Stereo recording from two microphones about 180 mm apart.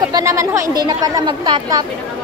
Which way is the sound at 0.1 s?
15° right (ahead or behind).